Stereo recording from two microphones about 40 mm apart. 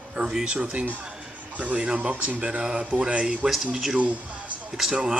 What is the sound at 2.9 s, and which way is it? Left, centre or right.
Speech, right.